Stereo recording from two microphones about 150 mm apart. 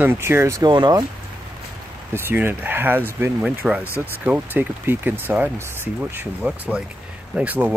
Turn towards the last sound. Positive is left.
turn(degrees=-10)  # may be behind; listen again after turning